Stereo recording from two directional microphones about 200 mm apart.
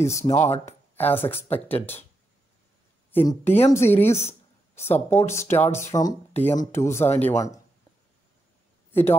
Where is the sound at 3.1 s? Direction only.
10° left (ahead or behind).